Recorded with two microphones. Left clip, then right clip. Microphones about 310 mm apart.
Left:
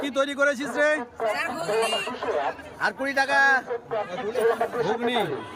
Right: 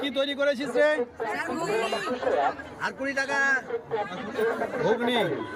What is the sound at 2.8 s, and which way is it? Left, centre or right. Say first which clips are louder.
Speech: left 5 dB; centre.